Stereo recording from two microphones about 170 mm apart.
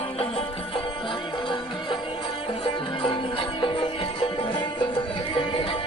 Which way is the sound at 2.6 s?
30° left (ahead or behind).